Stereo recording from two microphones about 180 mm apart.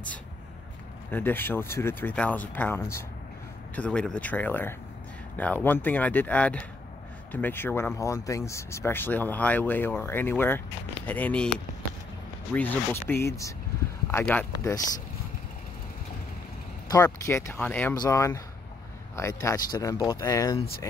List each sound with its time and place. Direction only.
1.1 s speech: 10° left (ahead or behind)
12.5 s speech: 10° left (ahead or behind)
16.9 s speech: 15° left (ahead or behind)